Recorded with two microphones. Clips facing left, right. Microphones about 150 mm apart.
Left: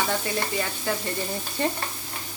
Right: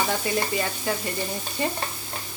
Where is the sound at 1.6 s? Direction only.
10° right (ahead or behind).